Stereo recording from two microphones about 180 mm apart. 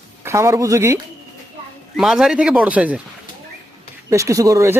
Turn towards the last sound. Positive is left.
turn(degrees=-15)  # may be behind; listen again after turning